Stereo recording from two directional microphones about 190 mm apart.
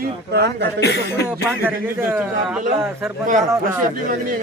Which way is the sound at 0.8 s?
60° left (ahead or behind).